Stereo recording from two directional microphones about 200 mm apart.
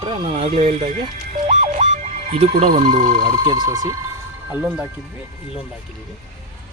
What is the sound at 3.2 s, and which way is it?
Speech, 20° right (ahead or behind).